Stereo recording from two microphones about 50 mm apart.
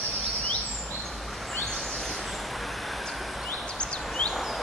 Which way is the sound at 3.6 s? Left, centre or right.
Centre.